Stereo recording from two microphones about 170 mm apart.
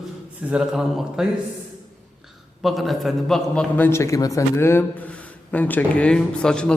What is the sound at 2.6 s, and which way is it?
A man's voice, centre (ahead or behind).